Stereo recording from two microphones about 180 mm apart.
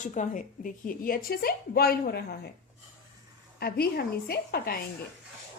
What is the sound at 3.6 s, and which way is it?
A woman's voice, 60° left (ahead or behind).